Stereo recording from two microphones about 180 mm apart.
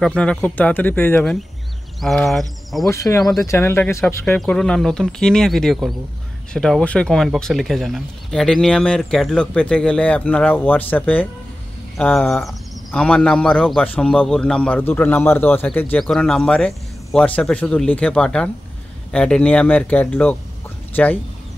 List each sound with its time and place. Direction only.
0.0 s speech: 5° left (ahead or behind)
2.9 s speech: 15° left (ahead or behind)